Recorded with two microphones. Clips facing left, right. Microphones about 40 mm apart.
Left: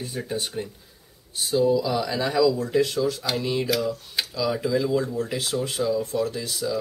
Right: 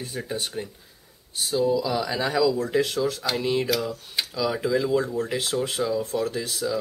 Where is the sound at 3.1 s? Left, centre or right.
Centre.